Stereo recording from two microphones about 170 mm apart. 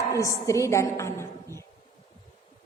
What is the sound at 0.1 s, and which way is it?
A woman's voice, 20° left (ahead or behind).